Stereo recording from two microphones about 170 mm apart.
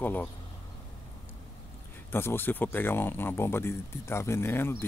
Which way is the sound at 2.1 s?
15° left (ahead or behind).